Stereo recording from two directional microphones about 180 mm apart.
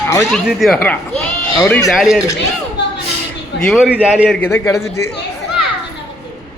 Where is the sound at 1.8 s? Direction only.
Centre (ahead or behind).